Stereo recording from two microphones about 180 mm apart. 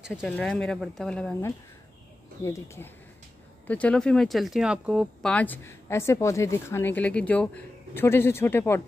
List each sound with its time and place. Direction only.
0.2 s speech: 5° left (ahead or behind)
5.3 s speech: 10° left (ahead or behind)